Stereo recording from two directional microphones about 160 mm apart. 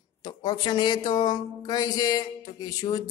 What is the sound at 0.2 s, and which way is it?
Speech, 25° left (ahead or behind).